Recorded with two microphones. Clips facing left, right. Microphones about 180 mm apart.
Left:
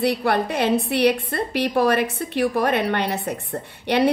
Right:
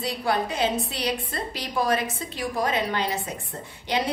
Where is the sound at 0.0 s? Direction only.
65° left (ahead or behind).